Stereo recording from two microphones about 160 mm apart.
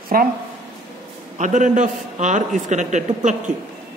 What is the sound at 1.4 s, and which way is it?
A man's voice, 50° right (ahead or behind).